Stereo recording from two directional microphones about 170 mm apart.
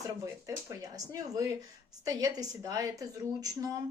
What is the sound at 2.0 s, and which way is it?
Speech, 20° right (ahead or behind).